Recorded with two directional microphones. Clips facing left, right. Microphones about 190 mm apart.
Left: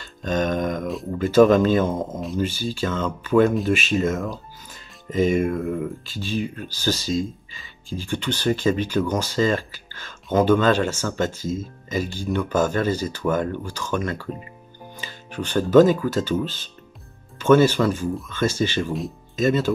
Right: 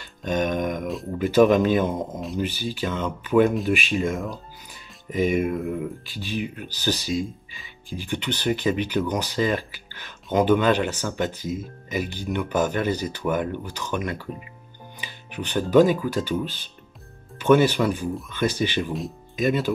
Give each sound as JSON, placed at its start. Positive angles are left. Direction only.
{"t": 0.0, "sound": "a sound", "side_deg": -15}
{"t": 1.1, "sound": "speech", "side_deg": -15}
{"t": 5.1, "sound": "speech", "side_deg": -10}